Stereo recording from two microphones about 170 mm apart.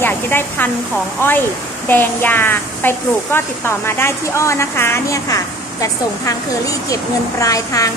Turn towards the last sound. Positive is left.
turn(degrees=20)  # may be behind; listen again after turning